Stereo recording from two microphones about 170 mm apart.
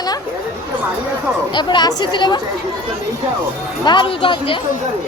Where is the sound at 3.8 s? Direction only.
25° left (ahead or behind).